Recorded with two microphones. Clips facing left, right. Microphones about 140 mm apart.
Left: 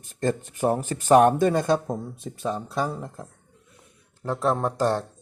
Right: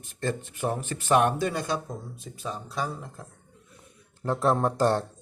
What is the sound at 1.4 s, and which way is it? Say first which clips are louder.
Speech: left 7 dB; 50° left (ahead or behind).